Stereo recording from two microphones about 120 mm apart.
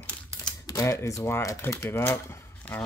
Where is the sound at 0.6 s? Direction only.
30° left (ahead or behind).